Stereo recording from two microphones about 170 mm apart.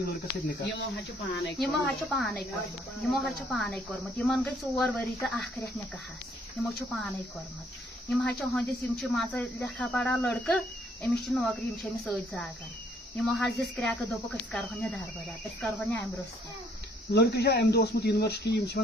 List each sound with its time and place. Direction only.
0.0 s speech: 80° left
1.9 s speech: centre (ahead or behind)
17.1 s speech: 70° left (ahead or behind)